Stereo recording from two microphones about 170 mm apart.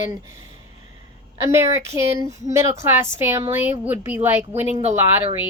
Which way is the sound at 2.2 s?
45° right (ahead or behind).